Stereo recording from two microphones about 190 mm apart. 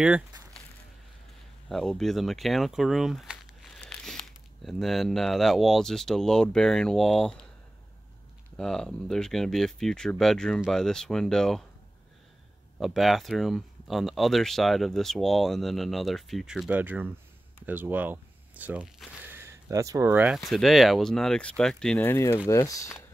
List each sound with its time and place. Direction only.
0.0 s a sound: 5° right (ahead or behind)
1.7 s speech: centre (ahead or behind)
8.5 s speech: 5° left (ahead or behind)
12.7 s speech: centre (ahead or behind)
20.3 s speech: centre (ahead or behind); by 23.0 s 15° left (ahead or behind)